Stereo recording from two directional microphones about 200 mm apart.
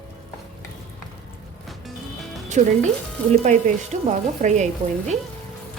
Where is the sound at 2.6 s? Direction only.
40° right (ahead or behind).